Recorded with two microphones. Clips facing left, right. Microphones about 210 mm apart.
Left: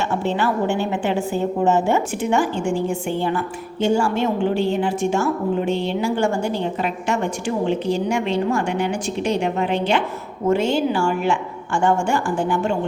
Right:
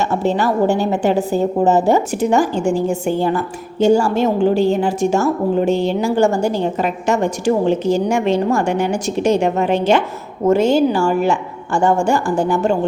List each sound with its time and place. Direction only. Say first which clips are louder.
0.0 s a woman's voice: right 4 dB; 40° right (ahead or behind)